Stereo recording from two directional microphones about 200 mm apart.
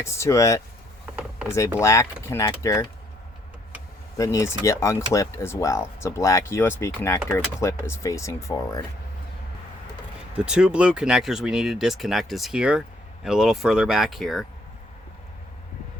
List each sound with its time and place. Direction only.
0.0 s speech: 15° left (ahead or behind)
1.1 s mechanisms: 5° right (ahead or behind)
1.8 s speech: 15° left (ahead or behind)
4.2 s speech: 15° left (ahead or behind)
10.3 s speech: 5° right (ahead or behind)